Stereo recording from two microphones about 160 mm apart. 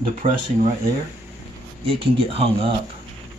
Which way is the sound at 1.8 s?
40° right (ahead or behind).